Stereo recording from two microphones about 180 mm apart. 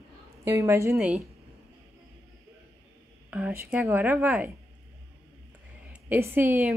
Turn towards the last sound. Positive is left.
turn(degrees=-10)  # may be behind; listen again after turning